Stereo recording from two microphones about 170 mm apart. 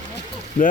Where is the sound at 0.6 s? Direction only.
50° left (ahead or behind).